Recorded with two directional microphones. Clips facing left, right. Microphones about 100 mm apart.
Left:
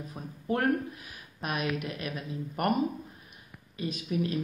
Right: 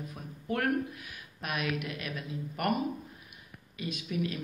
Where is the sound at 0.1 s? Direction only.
30° left (ahead or behind).